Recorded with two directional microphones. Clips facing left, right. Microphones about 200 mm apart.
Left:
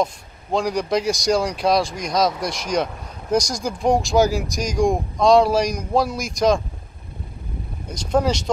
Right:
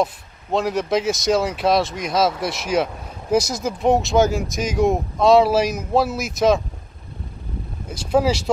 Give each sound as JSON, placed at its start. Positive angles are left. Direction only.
{"t": 0.0, "sound": "speech", "side_deg": 0}
{"t": 7.9, "sound": "speech", "side_deg": -5}